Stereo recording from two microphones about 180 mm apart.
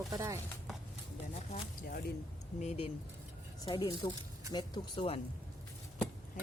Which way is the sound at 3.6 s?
25° left (ahead or behind).